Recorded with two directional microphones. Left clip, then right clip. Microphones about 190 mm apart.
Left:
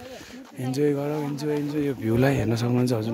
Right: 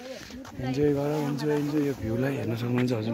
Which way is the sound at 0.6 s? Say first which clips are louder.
Left 1 dB; 55° left (ahead or behind).